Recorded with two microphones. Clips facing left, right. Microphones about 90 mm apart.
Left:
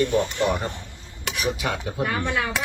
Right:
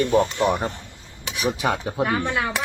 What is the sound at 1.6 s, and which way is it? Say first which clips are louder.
Speech: right 4 dB; 30° right (ahead or behind).